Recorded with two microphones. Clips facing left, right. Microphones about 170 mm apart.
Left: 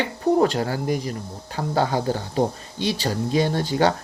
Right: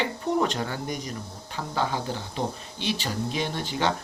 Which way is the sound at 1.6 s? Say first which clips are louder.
Left 6 dB; 45° left (ahead or behind).